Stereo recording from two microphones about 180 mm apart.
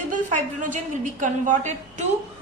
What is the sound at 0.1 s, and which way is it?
A woman's voice, 45° right (ahead or behind).